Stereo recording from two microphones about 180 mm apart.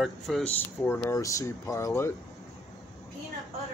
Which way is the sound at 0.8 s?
10° left (ahead or behind).